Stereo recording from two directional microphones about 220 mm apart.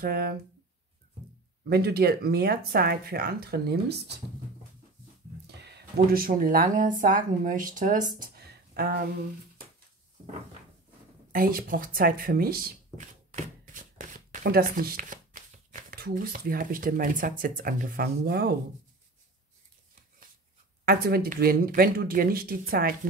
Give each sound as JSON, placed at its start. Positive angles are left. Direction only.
{"t": 0.0, "sound": "speech", "side_deg": -45}
{"t": 1.6, "sound": "speech", "side_deg": -45}
{"t": 5.6, "sound": "speech", "side_deg": -50}
{"t": 8.2, "sound": "a sound", "side_deg": -45}
{"t": 11.3, "sound": "speech", "side_deg": -40}
{"t": 20.8, "sound": "speech", "side_deg": -45}